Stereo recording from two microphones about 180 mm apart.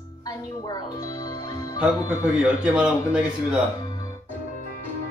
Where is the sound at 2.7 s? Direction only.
5° right (ahead or behind).